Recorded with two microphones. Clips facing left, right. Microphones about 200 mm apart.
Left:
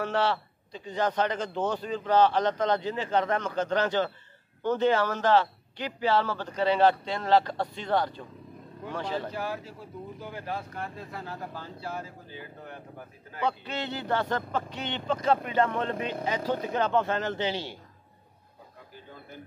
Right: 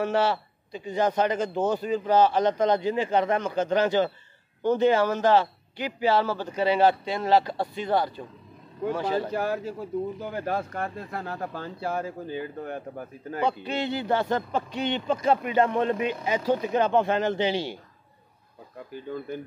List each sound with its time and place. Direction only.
0.0 s a man's voice: 10° right (ahead or behind)
9.3 s speech: 50° right (ahead or behind)
13.4 s a man's voice: 15° right (ahead or behind)